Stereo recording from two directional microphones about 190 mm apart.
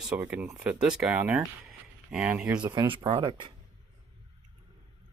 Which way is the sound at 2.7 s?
20° right (ahead or behind).